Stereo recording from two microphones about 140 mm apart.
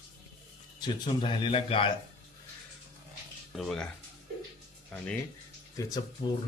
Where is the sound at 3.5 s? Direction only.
Centre (ahead or behind).